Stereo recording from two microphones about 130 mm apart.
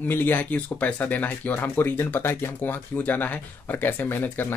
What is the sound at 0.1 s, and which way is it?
Speech, 15° left (ahead or behind).